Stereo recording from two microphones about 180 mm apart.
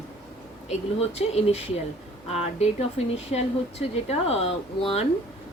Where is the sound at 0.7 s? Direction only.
35° left (ahead or behind).